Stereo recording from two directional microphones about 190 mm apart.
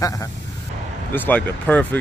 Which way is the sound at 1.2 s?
10° left (ahead or behind).